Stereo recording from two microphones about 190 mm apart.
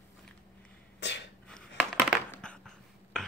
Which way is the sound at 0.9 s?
65° left (ahead or behind).